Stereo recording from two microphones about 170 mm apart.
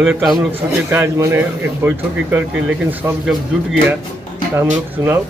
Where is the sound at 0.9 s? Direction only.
15° right (ahead or behind).